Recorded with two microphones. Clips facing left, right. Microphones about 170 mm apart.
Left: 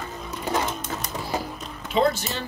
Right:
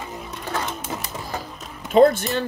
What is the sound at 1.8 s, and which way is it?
Speech, 50° right (ahead or behind).